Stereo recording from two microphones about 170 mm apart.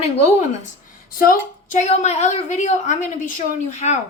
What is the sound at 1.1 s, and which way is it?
A woman's voice, 55° left (ahead or behind).